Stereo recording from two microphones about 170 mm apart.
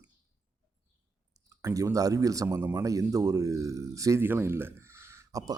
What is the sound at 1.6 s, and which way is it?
A man's voice, 20° right (ahead or behind).